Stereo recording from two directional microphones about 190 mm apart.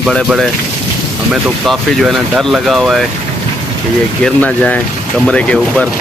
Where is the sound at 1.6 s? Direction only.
Centre (ahead or behind).